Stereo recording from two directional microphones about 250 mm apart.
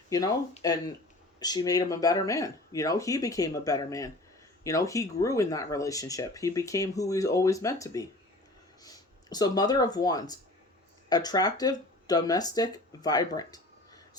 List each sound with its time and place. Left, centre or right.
0.1 s speech: centre